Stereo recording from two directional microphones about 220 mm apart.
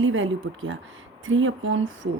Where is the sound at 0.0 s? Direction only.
60° right (ahead or behind).